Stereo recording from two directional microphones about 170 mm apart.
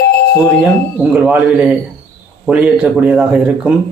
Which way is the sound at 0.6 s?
5° right (ahead or behind).